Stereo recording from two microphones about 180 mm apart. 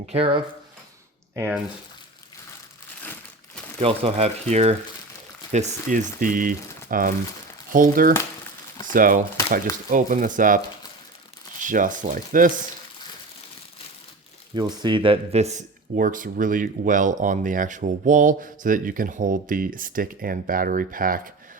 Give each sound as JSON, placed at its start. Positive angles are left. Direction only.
{"t": 0.0, "sound": "speech", "side_deg": -35}
{"t": 1.4, "sound": "speech", "side_deg": -5}
{"t": 3.0, "sound": "crumpling", "side_deg": 10}
{"t": 3.8, "sound": "speech", "side_deg": -35}
{"t": 11.6, "sound": "speech", "side_deg": -45}
{"t": 14.5, "sound": "speech", "side_deg": -25}
{"t": 16.0, "sound": "speech", "side_deg": -50}